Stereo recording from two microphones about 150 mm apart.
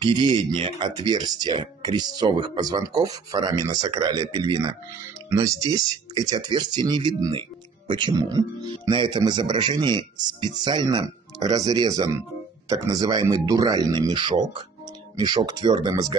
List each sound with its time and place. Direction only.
0.0 s speech: 30° right (ahead or behind)